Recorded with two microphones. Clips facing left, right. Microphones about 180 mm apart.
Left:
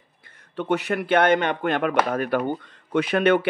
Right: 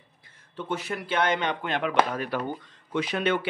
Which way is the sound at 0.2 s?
65° left (ahead or behind).